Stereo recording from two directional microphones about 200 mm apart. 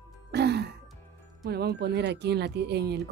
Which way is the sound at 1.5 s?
55° right (ahead or behind).